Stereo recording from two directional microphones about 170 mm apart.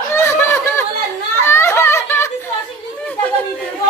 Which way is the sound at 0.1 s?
15° left (ahead or behind).